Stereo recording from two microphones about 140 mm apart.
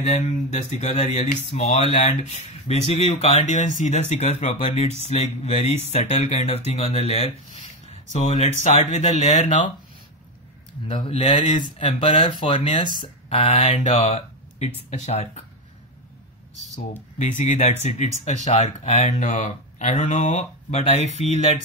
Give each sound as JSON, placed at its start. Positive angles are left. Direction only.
{"t": 0.0, "sound": "speech", "side_deg": 55}
{"t": 7.8, "sound": "a sound", "side_deg": 55}
{"t": 8.6, "sound": "speech", "side_deg": 50}
{"t": 11.1, "sound": "speech", "side_deg": 45}
{"t": 12.0, "sound": "speech", "side_deg": 60}
{"t": 12.3, "sound": "speech", "side_deg": 30}
{"t": 13.3, "sound": "speech", "side_deg": 45}
{"t": 17.4, "sound": "speech", "side_deg": 60}